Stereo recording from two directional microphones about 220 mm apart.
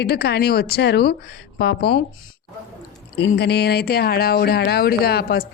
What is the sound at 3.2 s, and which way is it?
A woman's voice, 50° left (ahead or behind).